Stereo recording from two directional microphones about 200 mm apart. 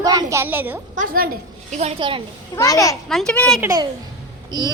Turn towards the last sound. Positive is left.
turn(degrees=-20)  # may be behind; listen again after turning